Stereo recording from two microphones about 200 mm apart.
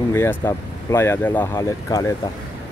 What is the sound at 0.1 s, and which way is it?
Speech, 15° left (ahead or behind).